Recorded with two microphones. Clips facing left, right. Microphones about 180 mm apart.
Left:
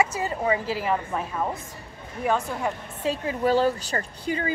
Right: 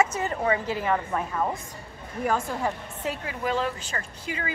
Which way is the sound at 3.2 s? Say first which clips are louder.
Left 7 dB; 35° left (ahead or behind).